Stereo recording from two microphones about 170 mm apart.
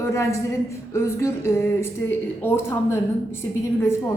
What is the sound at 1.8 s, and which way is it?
A woman's voice, 15° left (ahead or behind).